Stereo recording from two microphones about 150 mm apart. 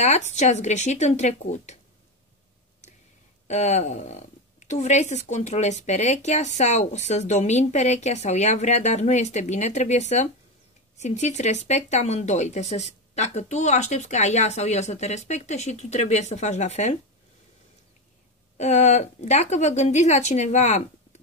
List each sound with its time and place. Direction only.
0.0 s speech: 50° left (ahead or behind)
3.4 s speech: 50° left (ahead or behind)
18.6 s speech: 50° left (ahead or behind)